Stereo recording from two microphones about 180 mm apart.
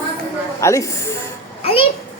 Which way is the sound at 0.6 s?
15° left (ahead or behind).